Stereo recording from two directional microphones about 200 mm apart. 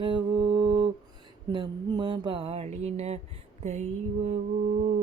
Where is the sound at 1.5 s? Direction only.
20° right (ahead or behind).